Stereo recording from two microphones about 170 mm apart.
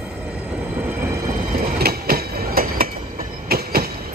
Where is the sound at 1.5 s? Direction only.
55° right (ahead or behind).